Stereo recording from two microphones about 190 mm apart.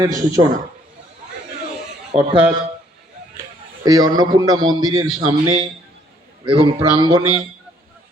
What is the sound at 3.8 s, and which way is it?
A man's voice, 20° right (ahead or behind).